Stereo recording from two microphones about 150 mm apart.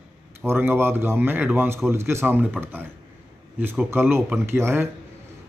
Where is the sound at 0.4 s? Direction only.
15° right (ahead or behind).